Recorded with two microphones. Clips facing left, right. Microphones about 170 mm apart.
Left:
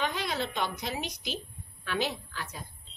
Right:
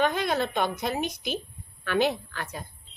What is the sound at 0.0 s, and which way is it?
A woman's voice, 50° right (ahead or behind).